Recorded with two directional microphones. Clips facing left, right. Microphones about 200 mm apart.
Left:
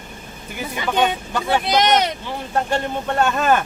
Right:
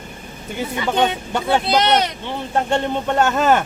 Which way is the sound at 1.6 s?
15° left (ahead or behind).